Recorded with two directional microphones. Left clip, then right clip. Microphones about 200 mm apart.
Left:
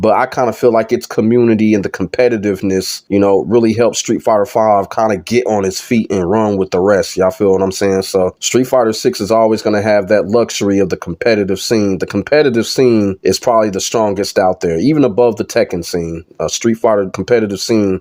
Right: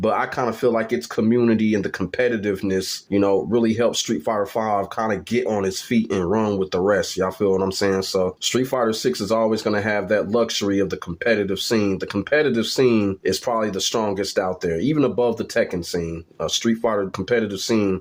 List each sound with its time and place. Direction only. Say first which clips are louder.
0.0 s speech: left 9 dB; 35° left (ahead or behind)
6.2 s speech: left 8 dB; 20° left (ahead or behind)